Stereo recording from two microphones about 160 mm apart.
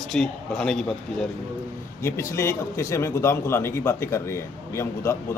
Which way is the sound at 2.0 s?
15° left (ahead or behind).